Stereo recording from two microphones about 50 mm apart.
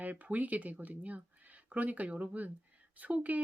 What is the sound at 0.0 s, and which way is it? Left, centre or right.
Speech, right.